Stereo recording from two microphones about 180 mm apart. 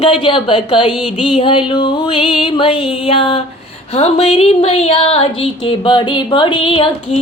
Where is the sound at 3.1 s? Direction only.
30° left (ahead or behind).